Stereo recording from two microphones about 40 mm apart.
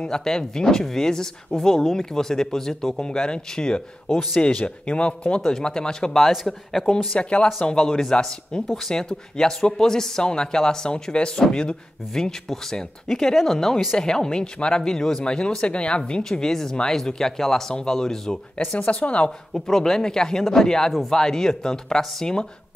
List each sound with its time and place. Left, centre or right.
0.0 s speech: centre
5.4 s speech: centre
6.1 s speech: centre
7.2 s speech: left
7.7 s speech: centre
13.9 s speech: centre
16.3 s speech: centre
18.8 s a woman's voice: left
19.5 s speech: centre
20.9 s speech: centre